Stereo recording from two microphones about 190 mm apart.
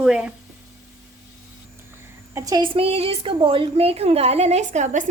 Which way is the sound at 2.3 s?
20° right (ahead or behind).